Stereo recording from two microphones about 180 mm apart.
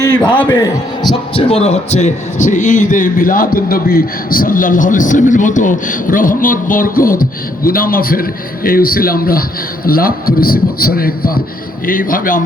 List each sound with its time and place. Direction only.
0.4 s a man's voice: 25° left (ahead or behind); by 12.4 s 50° left (ahead or behind)